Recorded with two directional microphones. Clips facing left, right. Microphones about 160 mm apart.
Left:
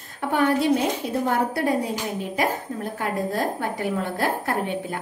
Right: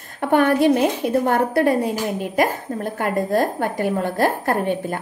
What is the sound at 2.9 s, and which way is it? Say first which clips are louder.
A woman's voice: right 6 dB; 55° right (ahead or behind).